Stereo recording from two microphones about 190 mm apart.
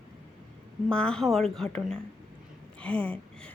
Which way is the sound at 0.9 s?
5° left (ahead or behind).